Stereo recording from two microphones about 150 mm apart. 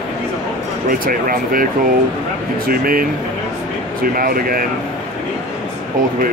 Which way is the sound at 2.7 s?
75° right (ahead or behind).